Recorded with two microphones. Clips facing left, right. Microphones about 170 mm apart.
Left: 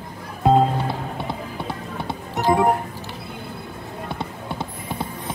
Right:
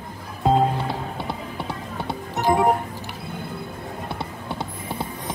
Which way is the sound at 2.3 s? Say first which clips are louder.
Left 1 dB; 20° right (ahead or behind).